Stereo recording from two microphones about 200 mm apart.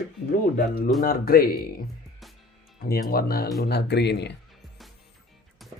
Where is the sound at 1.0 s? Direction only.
50° left (ahead or behind).